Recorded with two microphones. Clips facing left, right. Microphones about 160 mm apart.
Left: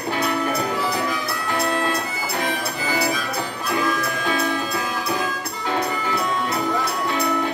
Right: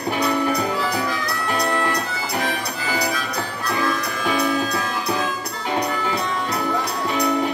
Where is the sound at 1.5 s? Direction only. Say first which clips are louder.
Even; 20° left (ahead or behind).